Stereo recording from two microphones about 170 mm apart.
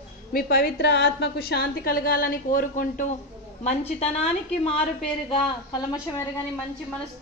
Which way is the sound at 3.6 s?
35° left (ahead or behind).